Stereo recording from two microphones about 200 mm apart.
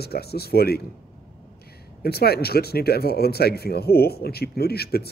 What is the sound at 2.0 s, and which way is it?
Speech, 50° left (ahead or behind).